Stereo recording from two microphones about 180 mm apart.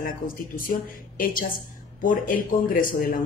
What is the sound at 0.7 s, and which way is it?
Speech, 50° left (ahead or behind).